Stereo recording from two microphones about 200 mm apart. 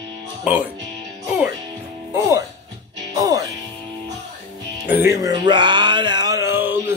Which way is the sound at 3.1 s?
15° right (ahead or behind).